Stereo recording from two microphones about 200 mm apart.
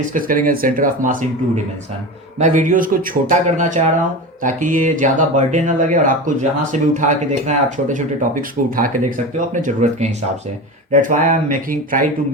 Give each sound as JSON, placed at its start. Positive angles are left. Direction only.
{"t": 0.1, "sound": "speech", "side_deg": -45}
{"t": 2.4, "sound": "speech", "side_deg": -40}
{"t": 11.1, "sound": "speech", "side_deg": -40}